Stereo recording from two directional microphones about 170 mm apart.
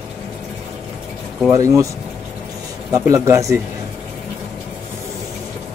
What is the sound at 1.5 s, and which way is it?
Speech, 20° right (ahead or behind).